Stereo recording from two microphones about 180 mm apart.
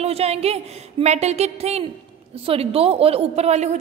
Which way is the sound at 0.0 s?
35° right (ahead or behind).